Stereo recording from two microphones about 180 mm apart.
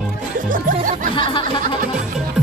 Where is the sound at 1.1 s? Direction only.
25° left (ahead or behind).